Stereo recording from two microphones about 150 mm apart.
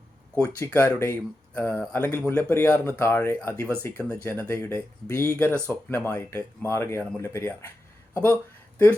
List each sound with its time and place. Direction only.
0.3 s speech: 10° left (ahead or behind)